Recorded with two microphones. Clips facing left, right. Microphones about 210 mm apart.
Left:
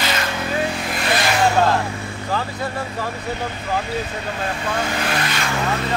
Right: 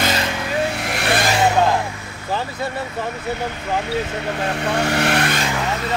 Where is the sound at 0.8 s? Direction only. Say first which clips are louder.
Right 1 dB; 70° right (ahead or behind).